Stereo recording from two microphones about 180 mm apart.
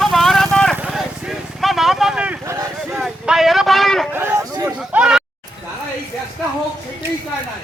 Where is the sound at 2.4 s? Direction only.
15° right (ahead or behind).